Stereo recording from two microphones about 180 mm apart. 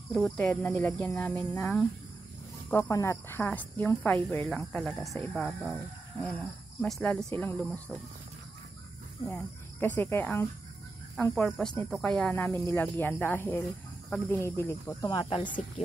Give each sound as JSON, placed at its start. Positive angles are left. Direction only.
{"t": 0.4, "sound": "speech", "side_deg": 15}
{"t": 2.7, "sound": "speech", "side_deg": 15}
{"t": 9.3, "sound": "speech", "side_deg": 10}
{"t": 15.0, "sound": "speech", "side_deg": 30}